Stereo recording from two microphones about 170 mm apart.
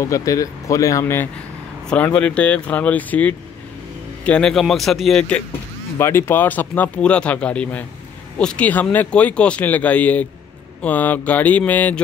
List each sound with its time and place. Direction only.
0.0 s speech: 20° left (ahead or behind); by 5.4 s centre (ahead or behind)
5.9 s speech: 15° left (ahead or behind)